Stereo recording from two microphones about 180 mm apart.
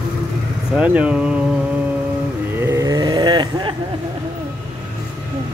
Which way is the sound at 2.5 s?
15° right (ahead or behind).